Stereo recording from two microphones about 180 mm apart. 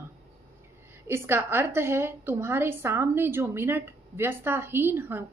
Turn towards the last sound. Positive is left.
turn(degrees=-10)  # may be behind; listen again after turning